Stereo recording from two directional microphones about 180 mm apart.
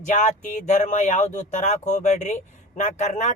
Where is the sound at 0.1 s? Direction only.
40° left (ahead or behind).